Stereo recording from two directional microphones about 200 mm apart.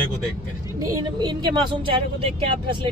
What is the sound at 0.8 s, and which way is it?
Speech, 20° right (ahead or behind).